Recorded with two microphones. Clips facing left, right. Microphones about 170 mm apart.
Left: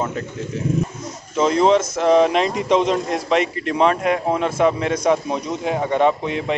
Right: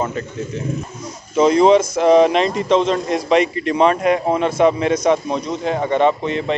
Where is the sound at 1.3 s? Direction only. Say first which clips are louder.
Right 4 dB; 5° right (ahead or behind); by 3.0 s 10° left (ahead or behind).